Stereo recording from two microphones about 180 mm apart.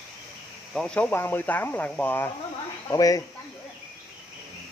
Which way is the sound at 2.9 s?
20° left (ahead or behind).